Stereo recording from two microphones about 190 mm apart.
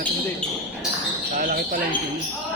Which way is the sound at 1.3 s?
45° right (ahead or behind).